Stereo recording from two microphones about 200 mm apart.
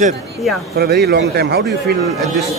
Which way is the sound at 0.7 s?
55° right (ahead or behind).